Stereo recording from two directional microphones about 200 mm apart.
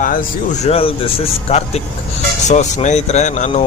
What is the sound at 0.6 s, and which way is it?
Speech, 30° left (ahead or behind).